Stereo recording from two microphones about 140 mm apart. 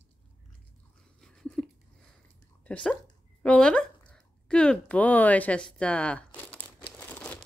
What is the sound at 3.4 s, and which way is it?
Speech, 10° left (ahead or behind).